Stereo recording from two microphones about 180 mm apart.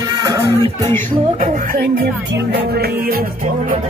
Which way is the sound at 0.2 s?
20° right (ahead or behind).